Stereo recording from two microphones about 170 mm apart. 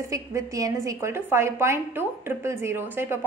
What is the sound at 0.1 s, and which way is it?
A woman's voice, 20° right (ahead or behind).